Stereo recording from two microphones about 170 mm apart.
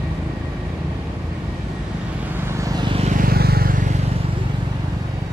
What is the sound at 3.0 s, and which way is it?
Vehicle, 55° right (ahead or behind).